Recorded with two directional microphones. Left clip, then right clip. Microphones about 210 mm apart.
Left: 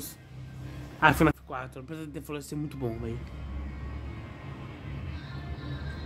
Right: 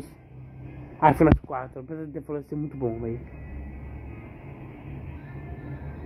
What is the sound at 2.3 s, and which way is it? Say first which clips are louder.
Speech: right 4 dB; 25° left (ahead or behind).